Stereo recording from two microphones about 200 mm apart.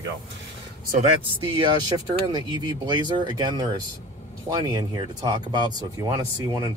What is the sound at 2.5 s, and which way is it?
Speech, 20° right (ahead or behind).